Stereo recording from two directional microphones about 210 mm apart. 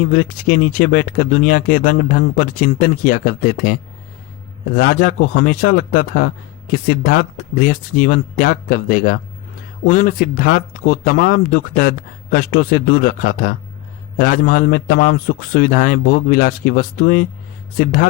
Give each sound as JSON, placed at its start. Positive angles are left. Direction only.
{"t": 0.1, "sound": "speech", "side_deg": 40}